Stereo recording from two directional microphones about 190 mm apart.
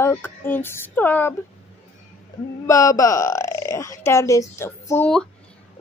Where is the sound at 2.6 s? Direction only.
15° left (ahead or behind).